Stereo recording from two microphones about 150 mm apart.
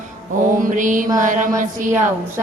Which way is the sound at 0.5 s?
60° right (ahead or behind).